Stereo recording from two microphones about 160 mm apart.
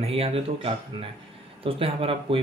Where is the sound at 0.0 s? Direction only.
40° right (ahead or behind).